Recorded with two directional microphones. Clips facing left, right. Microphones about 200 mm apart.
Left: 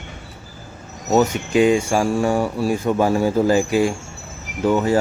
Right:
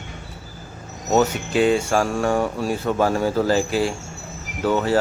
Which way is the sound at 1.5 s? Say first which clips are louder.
Left 2 dB; 10° left (ahead or behind).